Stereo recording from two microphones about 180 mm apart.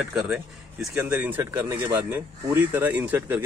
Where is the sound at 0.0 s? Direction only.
5° right (ahead or behind).